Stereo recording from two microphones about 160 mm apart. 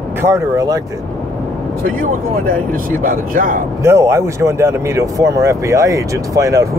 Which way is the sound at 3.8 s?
15° right (ahead or behind).